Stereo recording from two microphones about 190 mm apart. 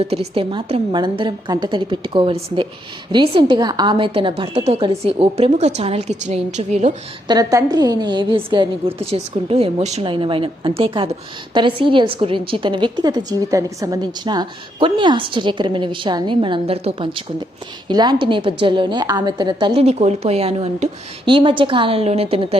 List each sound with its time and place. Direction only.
0.0 s a woman's voice: 35° right (ahead or behind)
7.3 s a woman's voice: 20° right (ahead or behind)